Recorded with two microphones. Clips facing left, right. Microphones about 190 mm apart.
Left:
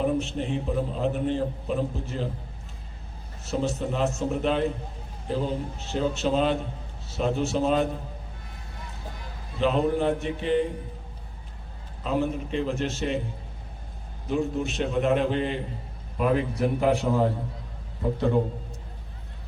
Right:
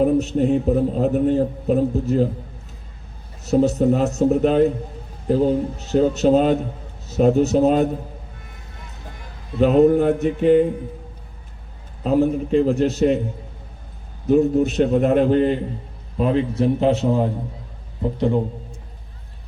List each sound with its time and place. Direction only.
0.0 s a man's voice: 40° right (ahead or behind)
3.4 s a man's voice: 40° right (ahead or behind)
9.6 s a man's voice: 45° right (ahead or behind)
12.0 s a man's voice: 40° right (ahead or behind)
14.3 s a man's voice: 40° right (ahead or behind)
16.1 s a man's voice: 30° right (ahead or behind)